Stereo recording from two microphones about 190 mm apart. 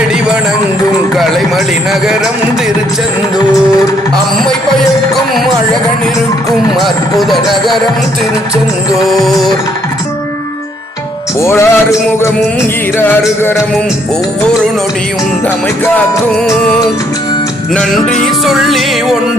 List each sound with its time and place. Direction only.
1.1 s speech: centre (ahead or behind)
6.7 s speech: centre (ahead or behind)
9.0 s speech: centre (ahead or behind)
11.3 s music: 15° left (ahead or behind)
17.7 s speech: 5° left (ahead or behind)